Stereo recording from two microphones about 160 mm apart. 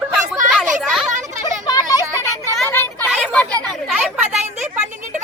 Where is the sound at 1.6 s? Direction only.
25° left (ahead or behind).